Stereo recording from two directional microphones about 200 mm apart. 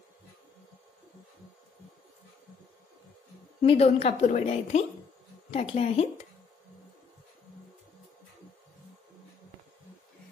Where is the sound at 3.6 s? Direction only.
30° left (ahead or behind).